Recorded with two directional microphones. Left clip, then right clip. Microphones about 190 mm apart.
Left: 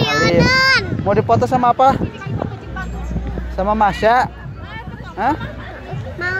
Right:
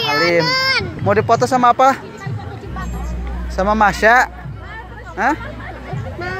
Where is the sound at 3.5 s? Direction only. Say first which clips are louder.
Right 1 dB; centre (ahead or behind).